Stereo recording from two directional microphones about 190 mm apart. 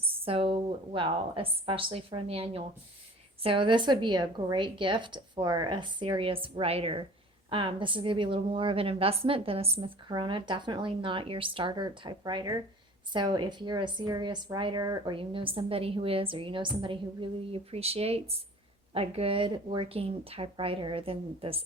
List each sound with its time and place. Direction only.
0.0 s a woman's voice: 30° right (ahead or behind)